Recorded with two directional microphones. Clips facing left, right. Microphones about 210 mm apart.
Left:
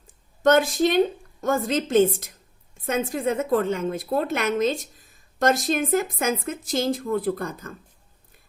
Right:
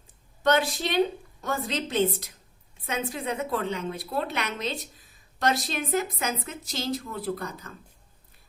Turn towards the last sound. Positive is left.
turn(degrees=50)  # may be behind; listen again after turning